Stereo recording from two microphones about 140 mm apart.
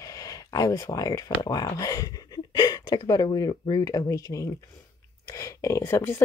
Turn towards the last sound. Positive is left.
turn(degrees=20)  # may be behind; listen again after turning